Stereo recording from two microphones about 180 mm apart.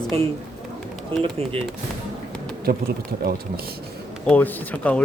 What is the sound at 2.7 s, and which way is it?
Speech, 60° right (ahead or behind).